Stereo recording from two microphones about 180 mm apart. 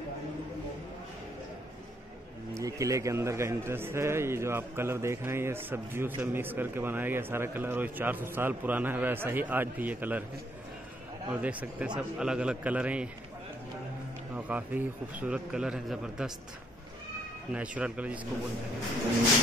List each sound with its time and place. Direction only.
2.5 s a man's voice: 15° right (ahead or behind)
11.4 s a man's voice: 5° right (ahead or behind)
14.3 s a man's voice: 10° right (ahead or behind)
17.5 s a man's voice: 5° right (ahead or behind)